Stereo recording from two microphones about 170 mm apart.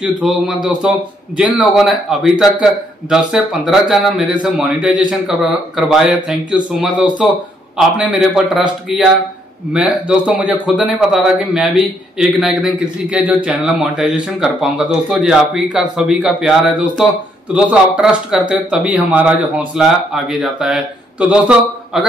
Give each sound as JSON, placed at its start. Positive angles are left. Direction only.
{"t": 0.2, "sound": "a man's voice", "side_deg": 0}